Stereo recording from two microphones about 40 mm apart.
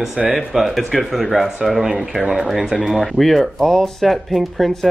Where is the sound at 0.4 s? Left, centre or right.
Centre.